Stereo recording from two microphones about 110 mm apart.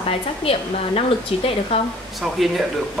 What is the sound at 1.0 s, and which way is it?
Speech, 65° left (ahead or behind).